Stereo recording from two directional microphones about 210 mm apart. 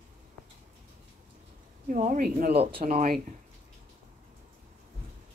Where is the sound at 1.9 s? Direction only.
40° right (ahead or behind).